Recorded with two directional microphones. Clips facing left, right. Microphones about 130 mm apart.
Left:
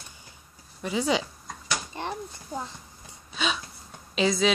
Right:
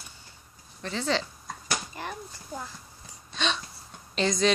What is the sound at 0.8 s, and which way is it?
Speech, 10° left (ahead or behind).